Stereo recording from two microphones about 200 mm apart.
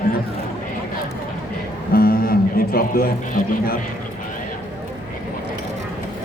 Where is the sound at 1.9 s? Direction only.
45° left (ahead or behind).